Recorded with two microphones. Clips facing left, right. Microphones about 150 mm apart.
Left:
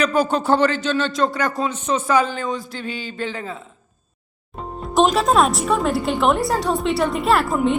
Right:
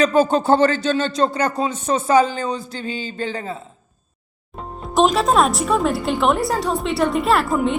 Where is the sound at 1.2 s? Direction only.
35° right (ahead or behind).